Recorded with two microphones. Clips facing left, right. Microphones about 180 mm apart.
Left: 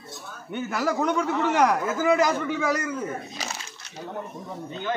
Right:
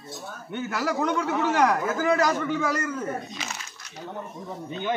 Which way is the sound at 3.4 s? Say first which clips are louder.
Left 2 dB; 40° left (ahead or behind).